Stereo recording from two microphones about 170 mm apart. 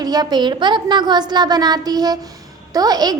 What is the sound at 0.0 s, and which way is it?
A woman's voice, 25° right (ahead or behind).